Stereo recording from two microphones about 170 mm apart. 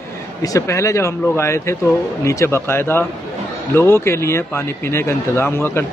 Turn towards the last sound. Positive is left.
turn(degrees=15)  # may be behind; listen again after turning